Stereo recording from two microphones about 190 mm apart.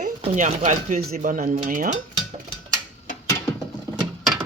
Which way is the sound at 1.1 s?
45° right (ahead or behind).